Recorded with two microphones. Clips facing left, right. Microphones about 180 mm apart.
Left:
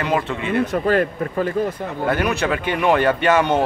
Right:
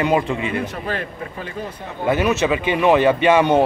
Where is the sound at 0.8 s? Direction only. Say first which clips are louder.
Left 8 dB; 45° left (ahead or behind).